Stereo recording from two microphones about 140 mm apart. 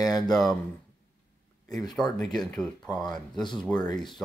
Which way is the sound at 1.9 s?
Centre (ahead or behind).